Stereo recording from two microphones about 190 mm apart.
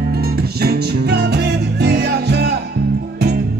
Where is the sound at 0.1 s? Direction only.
55° right (ahead or behind).